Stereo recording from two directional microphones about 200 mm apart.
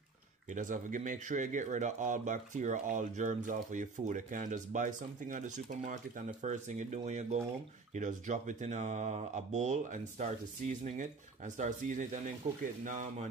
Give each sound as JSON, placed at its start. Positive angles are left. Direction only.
{"t": 0.5, "sound": "speech", "side_deg": -40}